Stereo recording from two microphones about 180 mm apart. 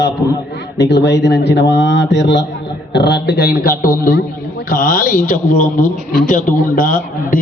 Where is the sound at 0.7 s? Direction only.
70° left (ahead or behind).